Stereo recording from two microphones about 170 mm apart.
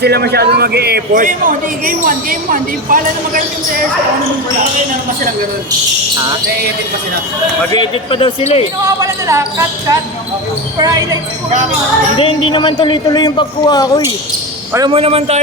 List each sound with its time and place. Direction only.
0.0 s a man's voice: 70° right (ahead or behind); by 3.4 s 55° right (ahead or behind)
7.7 s a man's voice: 25° left (ahead or behind)
8.8 s speech: 20° right (ahead or behind)
12.1 s a man's voice: 30° left (ahead or behind)
14.8 s a man's voice: 35° right (ahead or behind)